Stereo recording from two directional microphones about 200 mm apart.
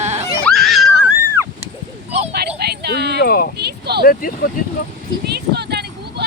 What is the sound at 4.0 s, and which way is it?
Speech, 45° left (ahead or behind).